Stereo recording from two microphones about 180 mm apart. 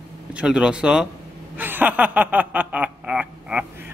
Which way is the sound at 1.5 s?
10° right (ahead or behind).